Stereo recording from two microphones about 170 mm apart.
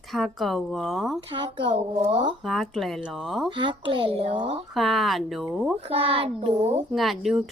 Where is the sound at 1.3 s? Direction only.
30° right (ahead or behind).